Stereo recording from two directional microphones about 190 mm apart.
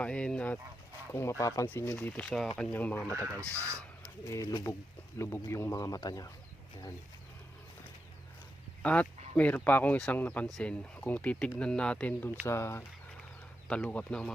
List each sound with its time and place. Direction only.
0.0 s speech: 5° left (ahead or behind)
3.2 s speech: 15° right (ahead or behind)
4.3 s speech: 15° left (ahead or behind)
8.8 s speech: 5° left (ahead or behind)